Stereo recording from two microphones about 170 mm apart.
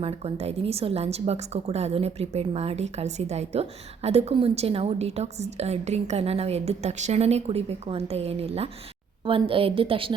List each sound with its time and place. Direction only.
0.0 s a woman's voice: 35° right (ahead or behind)